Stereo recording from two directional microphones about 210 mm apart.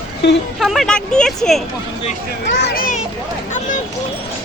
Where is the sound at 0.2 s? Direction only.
55° left (ahead or behind).